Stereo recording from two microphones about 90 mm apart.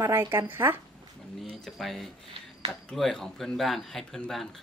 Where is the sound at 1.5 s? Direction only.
5° left (ahead or behind).